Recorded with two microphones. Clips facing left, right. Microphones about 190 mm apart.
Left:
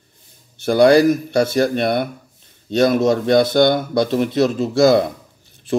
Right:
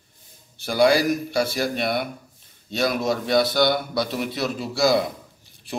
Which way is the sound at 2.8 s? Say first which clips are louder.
Left 7 dB; 50° left (ahead or behind).